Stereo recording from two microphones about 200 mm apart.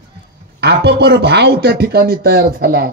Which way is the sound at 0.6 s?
55° right (ahead or behind).